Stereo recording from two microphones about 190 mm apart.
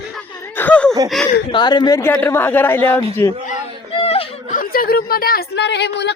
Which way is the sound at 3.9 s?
30° left (ahead or behind).